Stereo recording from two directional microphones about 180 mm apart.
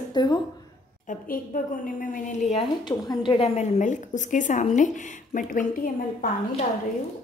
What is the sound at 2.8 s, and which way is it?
A woman's voice, 25° left (ahead or behind).